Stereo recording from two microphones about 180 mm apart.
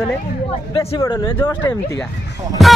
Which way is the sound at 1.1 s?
25° left (ahead or behind).